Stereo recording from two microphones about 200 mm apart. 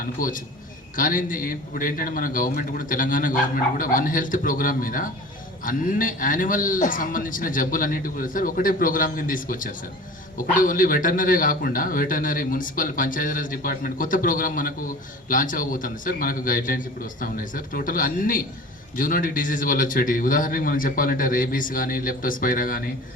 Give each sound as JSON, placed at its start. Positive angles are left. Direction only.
{"t": 0.0, "sound": "a man's voice", "side_deg": 45}